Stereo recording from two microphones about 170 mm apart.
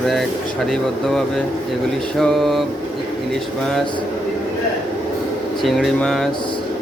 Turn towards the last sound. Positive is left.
turn(degrees=0)  # may be behind; listen again after turning